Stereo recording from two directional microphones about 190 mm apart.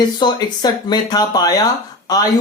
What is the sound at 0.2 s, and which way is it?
A man's voice, 20° left (ahead or behind).